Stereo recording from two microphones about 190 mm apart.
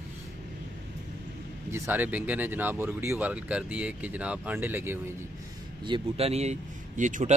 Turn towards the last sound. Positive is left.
turn(degrees=-40)  # may be behind; listen again after turning